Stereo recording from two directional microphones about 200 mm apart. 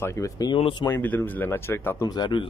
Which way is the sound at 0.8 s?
10° left (ahead or behind).